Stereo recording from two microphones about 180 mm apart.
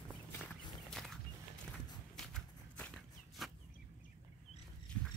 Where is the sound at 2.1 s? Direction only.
5° left (ahead or behind).